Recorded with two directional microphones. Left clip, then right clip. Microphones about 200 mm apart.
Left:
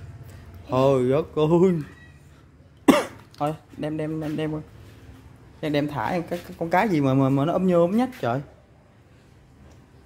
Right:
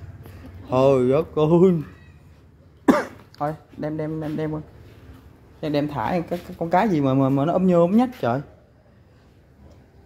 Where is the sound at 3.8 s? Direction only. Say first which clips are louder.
Right 1 dB; 5° left (ahead or behind).